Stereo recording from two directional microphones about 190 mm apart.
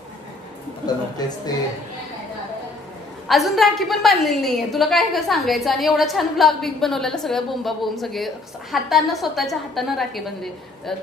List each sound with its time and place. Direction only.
0.8 s speech: 20° left (ahead or behind)
3.3 s a woman's voice: centre (ahead or behind)